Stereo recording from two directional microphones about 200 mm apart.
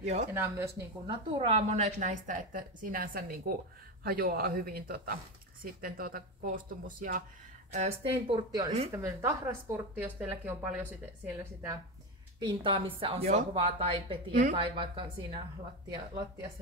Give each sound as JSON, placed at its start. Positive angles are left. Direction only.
{"t": 0.0, "sound": "a woman's voice", "side_deg": -35}
{"t": 0.3, "sound": "a woman's voice", "side_deg": -10}
{"t": 7.7, "sound": "a woman's voice", "side_deg": -30}
{"t": 12.4, "sound": "a woman's voice", "side_deg": -25}